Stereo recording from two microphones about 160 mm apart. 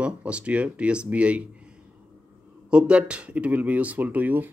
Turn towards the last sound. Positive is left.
turn(degrees=-10)  # may be behind; listen again after turning